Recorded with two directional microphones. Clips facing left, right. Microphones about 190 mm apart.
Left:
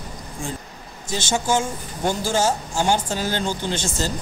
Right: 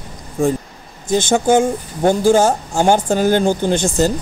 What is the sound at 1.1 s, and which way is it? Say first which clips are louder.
Speech: right 9 dB; 55° right (ahead or behind).